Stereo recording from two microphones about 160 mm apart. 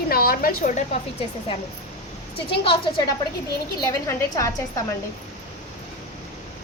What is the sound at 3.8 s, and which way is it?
Speech, 20° left (ahead or behind).